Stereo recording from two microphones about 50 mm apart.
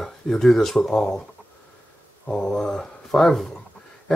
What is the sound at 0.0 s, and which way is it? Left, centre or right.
Speech, centre.